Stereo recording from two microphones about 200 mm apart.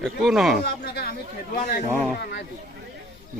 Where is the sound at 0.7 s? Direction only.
55° left (ahead or behind).